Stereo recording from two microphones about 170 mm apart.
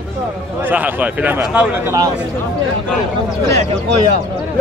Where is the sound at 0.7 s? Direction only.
10° right (ahead or behind).